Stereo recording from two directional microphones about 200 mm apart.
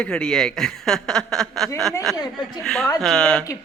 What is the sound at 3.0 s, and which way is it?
Speech, 5° left (ahead or behind).